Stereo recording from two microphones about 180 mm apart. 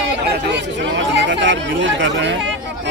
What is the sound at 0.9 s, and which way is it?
Speech, 85° right.